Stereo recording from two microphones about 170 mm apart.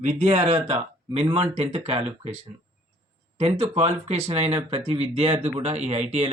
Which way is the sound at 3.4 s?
35° right (ahead or behind).